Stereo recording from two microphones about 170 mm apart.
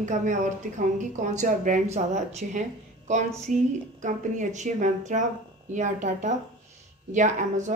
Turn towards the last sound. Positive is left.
turn(degrees=-45)  # may be behind; listen again after turning